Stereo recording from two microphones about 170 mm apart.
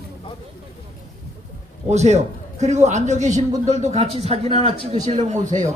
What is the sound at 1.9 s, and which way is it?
A man's voice, 40° right (ahead or behind).